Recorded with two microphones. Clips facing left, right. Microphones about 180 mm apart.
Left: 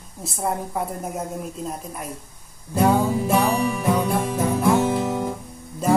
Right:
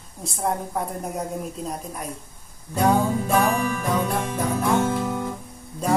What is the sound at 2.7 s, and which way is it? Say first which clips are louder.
Music: left 1 dB; 5° left (ahead or behind).